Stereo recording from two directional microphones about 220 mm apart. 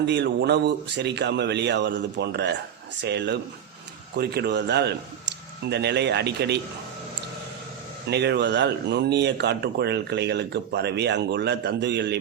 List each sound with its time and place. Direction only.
0.0 s speech: 50° right (ahead or behind)
8.0 s speech: 50° right (ahead or behind)